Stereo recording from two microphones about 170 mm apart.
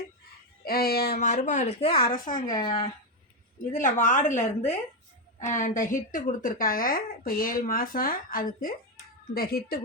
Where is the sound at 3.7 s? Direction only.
50° left (ahead or behind).